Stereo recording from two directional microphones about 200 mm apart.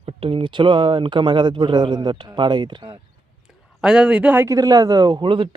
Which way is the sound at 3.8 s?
5° right (ahead or behind).